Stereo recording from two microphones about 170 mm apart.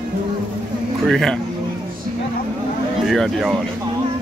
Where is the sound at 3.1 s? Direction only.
Centre (ahead or behind).